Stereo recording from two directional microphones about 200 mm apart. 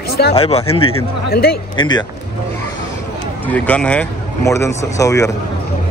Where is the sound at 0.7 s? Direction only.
90° left.